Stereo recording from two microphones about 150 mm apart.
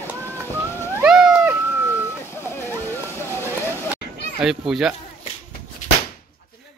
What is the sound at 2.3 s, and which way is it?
Vehicle, 15° left (ahead or behind).